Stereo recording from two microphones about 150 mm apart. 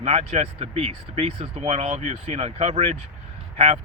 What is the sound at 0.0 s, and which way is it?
Speech, 45° right (ahead or behind).